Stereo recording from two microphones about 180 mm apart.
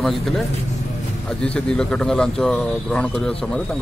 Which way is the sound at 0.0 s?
Centre (ahead or behind).